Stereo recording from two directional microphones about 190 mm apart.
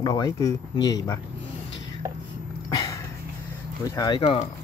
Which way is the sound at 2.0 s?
15° right (ahead or behind).